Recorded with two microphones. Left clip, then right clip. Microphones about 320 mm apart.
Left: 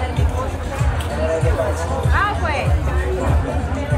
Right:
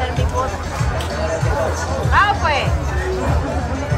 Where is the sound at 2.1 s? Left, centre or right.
Centre.